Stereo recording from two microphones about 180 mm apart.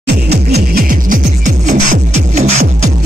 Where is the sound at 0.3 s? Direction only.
65° right (ahead or behind).